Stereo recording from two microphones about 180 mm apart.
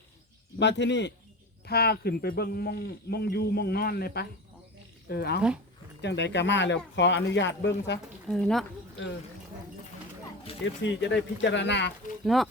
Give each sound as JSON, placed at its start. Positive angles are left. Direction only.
{"t": 0.6, "sound": "speech", "side_deg": 75}
{"t": 1.6, "sound": "speech", "side_deg": 60}
{"t": 8.3, "sound": "speech", "side_deg": 0}
{"t": 10.6, "sound": "speech", "side_deg": 90}
{"t": 12.2, "sound": "speech", "side_deg": 0}